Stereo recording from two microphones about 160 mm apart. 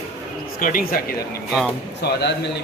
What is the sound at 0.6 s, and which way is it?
Speech, 55° left (ahead or behind).